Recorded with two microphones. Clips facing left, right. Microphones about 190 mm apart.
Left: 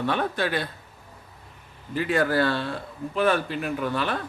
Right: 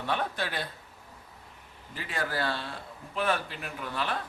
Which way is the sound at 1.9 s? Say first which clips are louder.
Left 11 dB; 60° left (ahead or behind).